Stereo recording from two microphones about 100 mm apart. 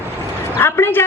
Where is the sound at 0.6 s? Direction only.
20° left (ahead or behind).